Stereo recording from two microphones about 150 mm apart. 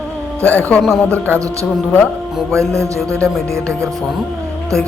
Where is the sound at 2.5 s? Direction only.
20° right (ahead or behind).